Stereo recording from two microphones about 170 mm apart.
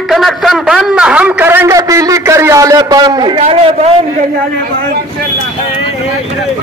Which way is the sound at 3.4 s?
35° right (ahead or behind).